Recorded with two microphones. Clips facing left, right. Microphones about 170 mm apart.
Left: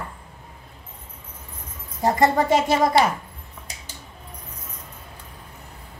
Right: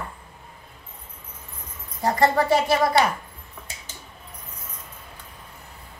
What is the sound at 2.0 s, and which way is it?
Speech, 20° left (ahead or behind).